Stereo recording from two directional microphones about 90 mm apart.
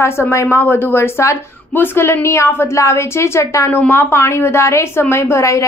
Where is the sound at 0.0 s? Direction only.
30° left (ahead or behind).